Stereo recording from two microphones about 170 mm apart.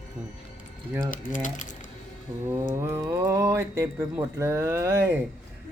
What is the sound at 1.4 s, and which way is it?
Speech, 50° left (ahead or behind).